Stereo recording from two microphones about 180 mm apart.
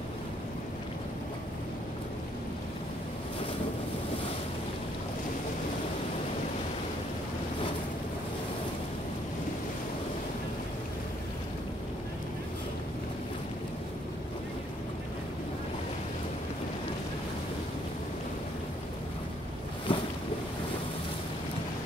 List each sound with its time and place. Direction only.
19.9 s boat: 30° left (ahead or behind)